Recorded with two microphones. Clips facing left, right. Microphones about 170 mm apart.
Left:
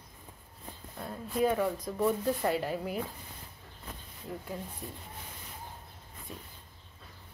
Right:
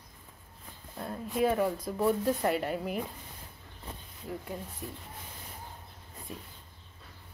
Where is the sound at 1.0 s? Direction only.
Centre (ahead or behind).